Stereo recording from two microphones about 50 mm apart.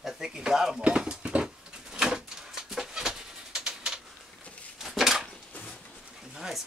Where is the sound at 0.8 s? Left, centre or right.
Right.